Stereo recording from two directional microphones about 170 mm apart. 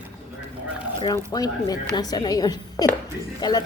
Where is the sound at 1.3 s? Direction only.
20° left (ahead or behind).